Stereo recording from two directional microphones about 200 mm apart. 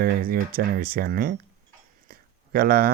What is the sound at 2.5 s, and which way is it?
Speech, 45° right (ahead or behind).